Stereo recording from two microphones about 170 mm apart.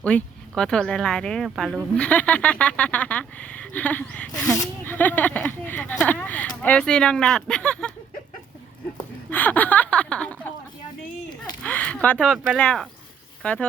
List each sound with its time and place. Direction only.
0.0 s speech: 5° left (ahead or behind)
4.3 s speech: 20° left (ahead or behind)
9.3 s speech: 10° left (ahead or behind)
11.6 s speech: 10° left (ahead or behind)